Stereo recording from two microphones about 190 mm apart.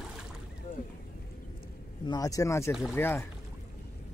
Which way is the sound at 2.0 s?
20° left (ahead or behind).